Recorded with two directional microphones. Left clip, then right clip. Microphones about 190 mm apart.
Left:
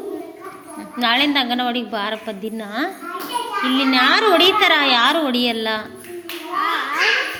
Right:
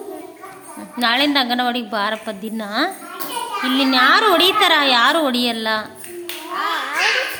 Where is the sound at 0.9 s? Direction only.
30° right (ahead or behind).